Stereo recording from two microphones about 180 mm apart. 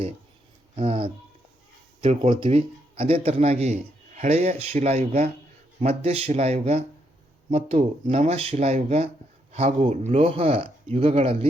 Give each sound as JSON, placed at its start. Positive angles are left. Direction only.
{"t": 0.8, "sound": "speech", "side_deg": -30}